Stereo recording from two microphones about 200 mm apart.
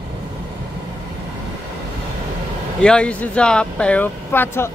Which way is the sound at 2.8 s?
5° left (ahead or behind).